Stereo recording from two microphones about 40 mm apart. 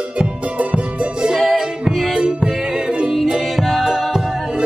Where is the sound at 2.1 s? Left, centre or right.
Right.